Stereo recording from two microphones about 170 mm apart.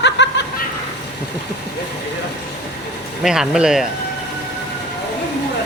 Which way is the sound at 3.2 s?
5° right (ahead or behind).